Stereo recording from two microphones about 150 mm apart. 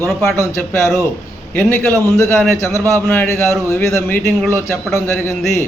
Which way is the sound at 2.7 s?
20° right (ahead or behind).